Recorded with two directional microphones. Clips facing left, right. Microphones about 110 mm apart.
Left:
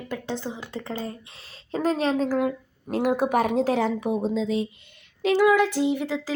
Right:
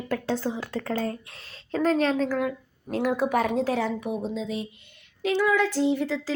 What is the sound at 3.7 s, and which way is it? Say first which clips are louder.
Speech: left 3 dB; 75° left (ahead or behind).